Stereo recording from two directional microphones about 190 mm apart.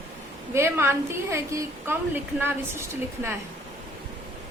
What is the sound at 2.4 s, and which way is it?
Speech, 15° right (ahead or behind).